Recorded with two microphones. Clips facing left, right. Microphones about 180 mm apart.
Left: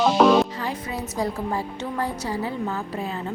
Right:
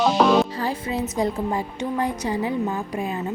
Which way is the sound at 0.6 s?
30° right (ahead or behind).